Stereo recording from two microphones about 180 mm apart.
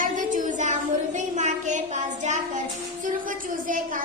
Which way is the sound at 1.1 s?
40° right (ahead or behind).